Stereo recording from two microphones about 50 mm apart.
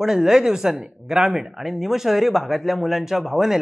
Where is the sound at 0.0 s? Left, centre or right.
Centre.